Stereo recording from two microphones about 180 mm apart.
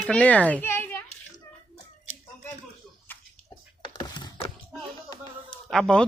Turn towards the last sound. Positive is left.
turn(degrees=5)  # may be behind; listen again after turning